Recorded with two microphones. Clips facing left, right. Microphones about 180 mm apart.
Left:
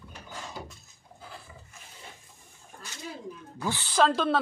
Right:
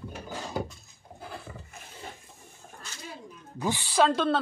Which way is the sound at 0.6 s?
55° right (ahead or behind).